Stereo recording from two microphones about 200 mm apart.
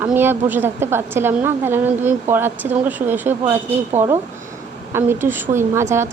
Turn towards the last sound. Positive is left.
turn(degrees=-10)  # may be behind; listen again after turning